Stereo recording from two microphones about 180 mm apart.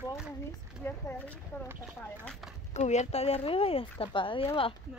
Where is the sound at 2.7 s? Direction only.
40° left (ahead or behind).